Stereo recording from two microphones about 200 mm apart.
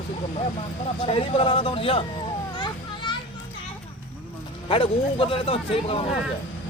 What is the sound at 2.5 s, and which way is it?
Children playing, 25° left (ahead or behind).